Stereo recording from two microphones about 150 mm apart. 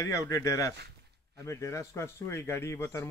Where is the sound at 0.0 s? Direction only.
20° left (ahead or behind).